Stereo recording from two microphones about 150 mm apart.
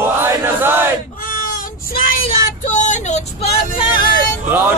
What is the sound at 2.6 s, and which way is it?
Vehicle, 55° left (ahead or behind).